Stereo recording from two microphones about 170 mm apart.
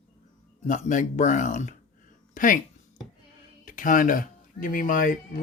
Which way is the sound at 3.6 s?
50° left (ahead or behind).